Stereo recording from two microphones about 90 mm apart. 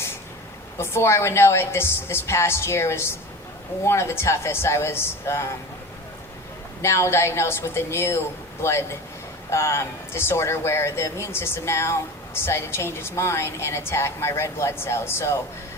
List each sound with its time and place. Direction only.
0.8 s a woman's voice: 30° left (ahead or behind)
6.8 s a woman's voice: 30° left (ahead or behind)